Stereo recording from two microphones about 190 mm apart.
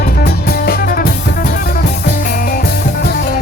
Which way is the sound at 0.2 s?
55° left (ahead or behind).